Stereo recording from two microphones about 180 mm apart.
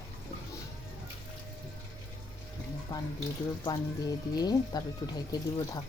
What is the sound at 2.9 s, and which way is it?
Speech, 20° left (ahead or behind).